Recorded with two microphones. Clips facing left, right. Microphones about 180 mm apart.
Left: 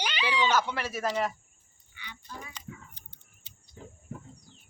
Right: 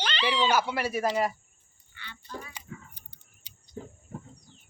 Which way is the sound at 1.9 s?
10° left (ahead or behind).